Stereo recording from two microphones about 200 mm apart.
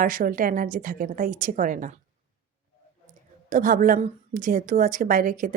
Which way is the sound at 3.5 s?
40° right (ahead or behind).